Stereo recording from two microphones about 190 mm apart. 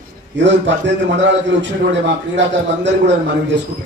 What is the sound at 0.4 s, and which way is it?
A man's voice, 70° right (ahead or behind).